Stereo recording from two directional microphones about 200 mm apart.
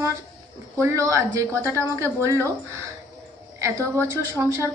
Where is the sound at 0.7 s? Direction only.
15° right (ahead or behind).